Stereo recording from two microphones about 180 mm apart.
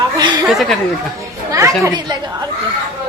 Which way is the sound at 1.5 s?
15° right (ahead or behind).